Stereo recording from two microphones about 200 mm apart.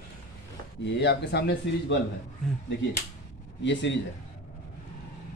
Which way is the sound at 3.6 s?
65° left (ahead or behind).